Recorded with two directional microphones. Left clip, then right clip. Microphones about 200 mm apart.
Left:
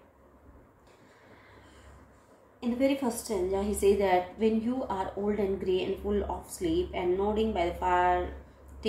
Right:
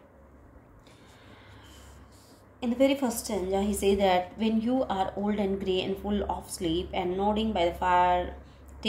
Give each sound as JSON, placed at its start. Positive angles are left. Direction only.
{"t": 2.6, "sound": "a woman's voice", "side_deg": -55}